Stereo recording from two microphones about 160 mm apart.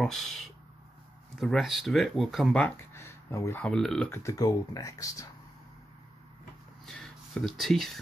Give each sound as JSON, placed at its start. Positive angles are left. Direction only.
{"t": 0.0, "sound": "speech", "side_deg": 5}
{"t": 3.6, "sound": "speech", "side_deg": 5}
{"t": 4.1, "sound": "speech", "side_deg": 20}
{"t": 6.9, "sound": "a sound", "side_deg": 5}